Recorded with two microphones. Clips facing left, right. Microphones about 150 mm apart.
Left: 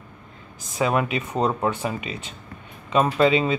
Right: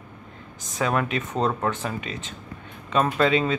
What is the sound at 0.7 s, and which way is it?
Speech, 10° left (ahead or behind).